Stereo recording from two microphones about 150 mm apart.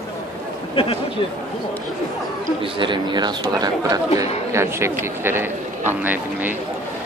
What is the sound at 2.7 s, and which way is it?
Speech, 35° right (ahead or behind).